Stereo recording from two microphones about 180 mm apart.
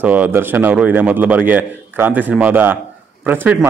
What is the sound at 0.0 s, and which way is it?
Speech, 10° right (ahead or behind).